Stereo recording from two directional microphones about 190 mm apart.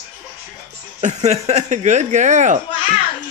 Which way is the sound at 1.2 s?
35° right (ahead or behind).